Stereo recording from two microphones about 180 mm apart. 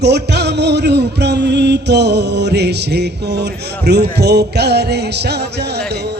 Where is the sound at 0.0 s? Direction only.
70° right (ahead or behind).